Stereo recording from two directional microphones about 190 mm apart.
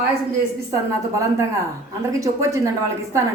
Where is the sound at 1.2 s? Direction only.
15° right (ahead or behind).